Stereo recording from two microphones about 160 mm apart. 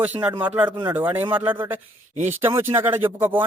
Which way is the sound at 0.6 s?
30° right (ahead or behind).